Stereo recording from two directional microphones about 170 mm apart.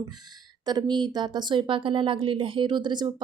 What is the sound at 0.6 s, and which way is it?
Speech, 25° right (ahead or behind).